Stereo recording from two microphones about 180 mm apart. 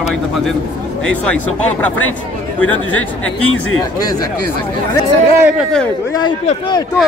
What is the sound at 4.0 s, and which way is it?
Speech, 20° left (ahead or behind).